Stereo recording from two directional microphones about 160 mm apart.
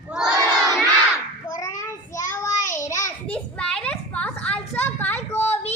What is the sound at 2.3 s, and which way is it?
Child singing, 15° left (ahead or behind).